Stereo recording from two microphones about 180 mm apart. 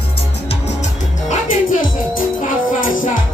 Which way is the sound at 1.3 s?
50° left (ahead or behind).